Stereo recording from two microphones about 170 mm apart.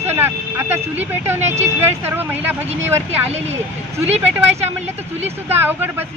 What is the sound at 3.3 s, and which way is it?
Speech, 40° right (ahead or behind).